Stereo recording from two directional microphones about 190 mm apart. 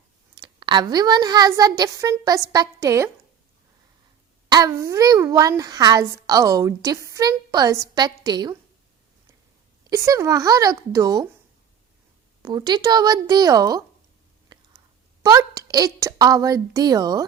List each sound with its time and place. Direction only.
0.3 s a child's voice: 25° right (ahead or behind)
4.4 s a child's voice: 20° right (ahead or behind)
9.9 s speech: 15° right (ahead or behind)
12.4 s a child's voice: 20° right (ahead or behind)
14.5 s whispering: 25° right (ahead or behind)
15.2 s a child's voice: 20° right (ahead or behind)